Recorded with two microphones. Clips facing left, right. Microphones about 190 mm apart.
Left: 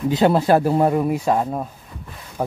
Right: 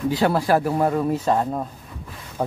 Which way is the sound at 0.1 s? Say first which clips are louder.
Left 5 dB; 25° left (ahead or behind).